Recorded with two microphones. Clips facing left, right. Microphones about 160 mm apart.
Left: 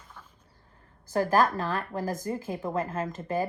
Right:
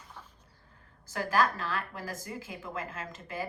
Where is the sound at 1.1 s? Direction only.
45° left (ahead or behind).